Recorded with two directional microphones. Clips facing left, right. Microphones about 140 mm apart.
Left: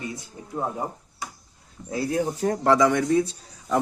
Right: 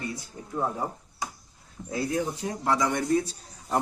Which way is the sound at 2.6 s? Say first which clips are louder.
Left 7 dB; 90° left.